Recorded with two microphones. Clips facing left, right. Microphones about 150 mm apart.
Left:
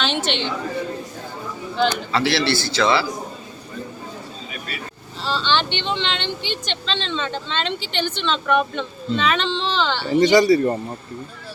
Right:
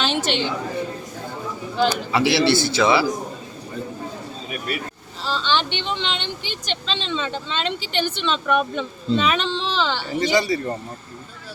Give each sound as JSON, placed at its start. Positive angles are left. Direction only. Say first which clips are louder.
{"t": 0.0, "sound": "a woman's voice", "louder": "right 1 dB", "side_deg": -5}
{"t": 1.7, "sound": "a man's voice", "louder": "even", "side_deg": -5}
{"t": 2.2, "sound": "a man's voice", "louder": "right 5 dB", "side_deg": -20}
{"t": 5.5, "sound": "speech", "louder": "left 1 dB", "side_deg": -5}
{"t": 10.2, "sound": "speech", "louder": "left 7 dB", "side_deg": 40}